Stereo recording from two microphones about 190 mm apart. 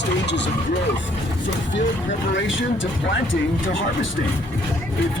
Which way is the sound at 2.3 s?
80° left.